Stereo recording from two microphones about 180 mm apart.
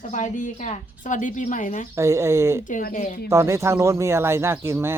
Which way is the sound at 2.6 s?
45° left (ahead or behind).